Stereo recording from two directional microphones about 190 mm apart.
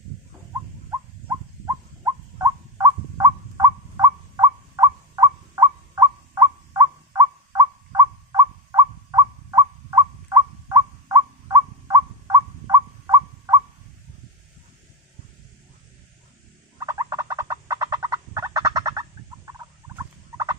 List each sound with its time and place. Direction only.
0.8 s a sound: 15° right (ahead or behind)
16.7 s gobble: 20° right (ahead or behind)
19.9 s turkey: 15° right (ahead or behind)